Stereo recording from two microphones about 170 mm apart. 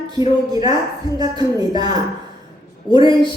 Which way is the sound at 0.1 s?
25° right (ahead or behind).